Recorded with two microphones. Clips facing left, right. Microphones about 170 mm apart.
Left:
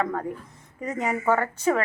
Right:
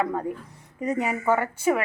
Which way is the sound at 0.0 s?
15° right (ahead or behind).